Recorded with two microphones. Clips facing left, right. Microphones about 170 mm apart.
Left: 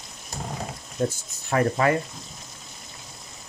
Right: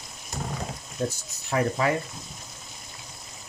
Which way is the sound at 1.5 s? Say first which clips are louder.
Left 3 dB; 60° left (ahead or behind).